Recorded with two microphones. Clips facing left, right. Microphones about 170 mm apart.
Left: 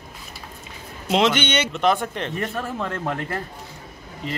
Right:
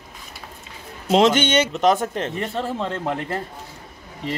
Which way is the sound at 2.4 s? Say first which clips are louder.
Even; 25° right (ahead or behind).